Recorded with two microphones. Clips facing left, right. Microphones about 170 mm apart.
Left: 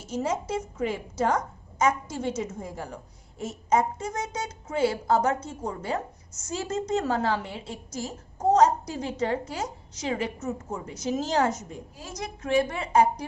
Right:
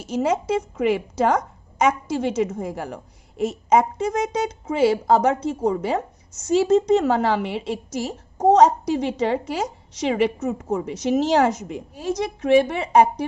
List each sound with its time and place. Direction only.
0.1 s a woman's voice: 80° right